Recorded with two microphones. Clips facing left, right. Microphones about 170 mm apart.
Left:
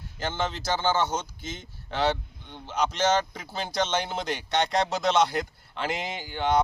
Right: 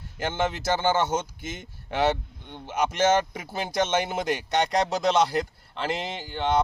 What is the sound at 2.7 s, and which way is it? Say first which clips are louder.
Speech: right 2 dB; 50° right (ahead or behind).